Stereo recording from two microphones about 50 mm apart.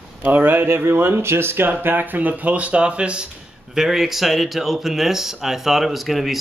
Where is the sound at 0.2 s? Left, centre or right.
Right.